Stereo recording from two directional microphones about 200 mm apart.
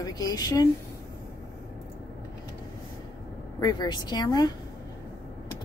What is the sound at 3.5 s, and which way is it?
Speech, 20° left (ahead or behind).